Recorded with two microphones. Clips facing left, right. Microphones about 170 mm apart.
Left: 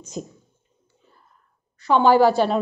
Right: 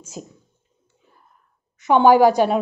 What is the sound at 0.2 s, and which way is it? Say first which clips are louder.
Speech: left 4 dB; 5° right (ahead or behind).